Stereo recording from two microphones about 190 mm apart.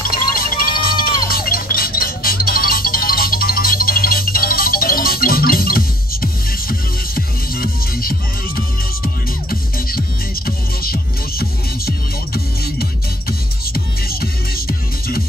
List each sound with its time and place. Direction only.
0.0 s music: 50° left (ahead or behind)
13.7 s music: 55° left (ahead or behind)